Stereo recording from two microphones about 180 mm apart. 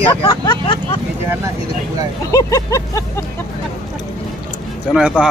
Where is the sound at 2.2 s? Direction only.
20° left (ahead or behind).